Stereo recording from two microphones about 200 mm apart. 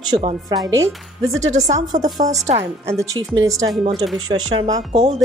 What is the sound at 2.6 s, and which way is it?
A woman's voice, 15° right (ahead or behind).